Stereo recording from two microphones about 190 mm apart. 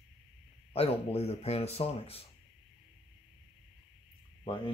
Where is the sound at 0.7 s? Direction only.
30° left (ahead or behind).